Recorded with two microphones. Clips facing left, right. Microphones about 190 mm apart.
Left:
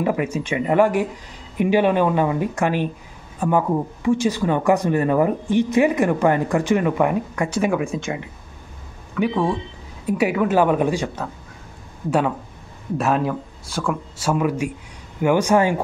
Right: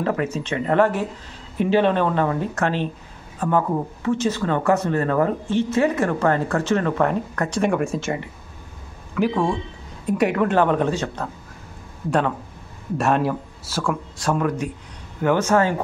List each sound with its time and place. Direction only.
0.0 s speech: 10° left (ahead or behind)